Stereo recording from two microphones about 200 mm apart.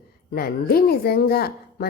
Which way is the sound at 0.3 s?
50° left (ahead or behind).